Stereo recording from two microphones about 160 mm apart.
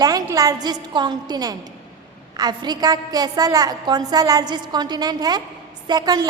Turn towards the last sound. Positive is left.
turn(degrees=-25)  # may be behind; listen again after turning